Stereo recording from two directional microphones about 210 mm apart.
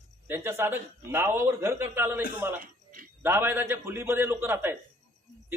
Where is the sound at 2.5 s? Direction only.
40° right (ahead or behind).